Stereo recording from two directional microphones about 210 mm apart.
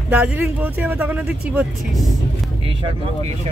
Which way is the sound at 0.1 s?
10° right (ahead or behind).